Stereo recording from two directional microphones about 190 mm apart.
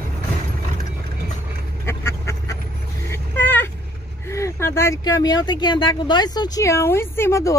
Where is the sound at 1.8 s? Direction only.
15° left (ahead or behind).